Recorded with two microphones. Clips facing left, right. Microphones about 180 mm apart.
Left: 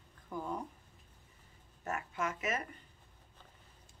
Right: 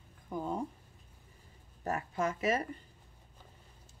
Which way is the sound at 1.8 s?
35° right (ahead or behind).